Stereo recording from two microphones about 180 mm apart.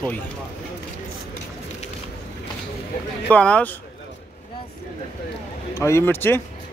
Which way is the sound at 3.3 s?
5° left (ahead or behind).